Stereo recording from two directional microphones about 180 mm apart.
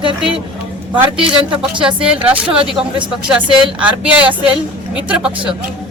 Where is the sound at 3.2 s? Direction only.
5° right (ahead or behind).